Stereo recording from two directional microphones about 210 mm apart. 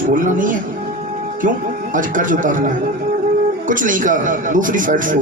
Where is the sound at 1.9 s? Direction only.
40° right (ahead or behind).